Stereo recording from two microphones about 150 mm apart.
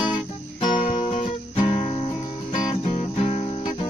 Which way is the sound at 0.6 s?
35° left (ahead or behind).